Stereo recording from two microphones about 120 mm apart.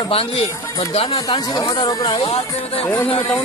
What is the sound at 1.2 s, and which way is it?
Speech, 35° left (ahead or behind).